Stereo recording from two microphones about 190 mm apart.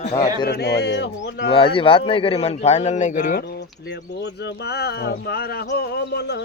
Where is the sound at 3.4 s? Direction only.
60° left (ahead or behind).